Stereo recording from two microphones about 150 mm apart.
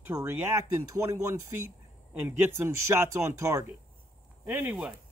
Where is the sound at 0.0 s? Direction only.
15° right (ahead or behind).